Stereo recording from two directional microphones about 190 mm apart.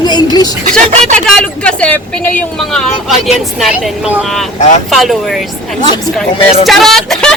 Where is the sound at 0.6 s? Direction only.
45° right (ahead or behind).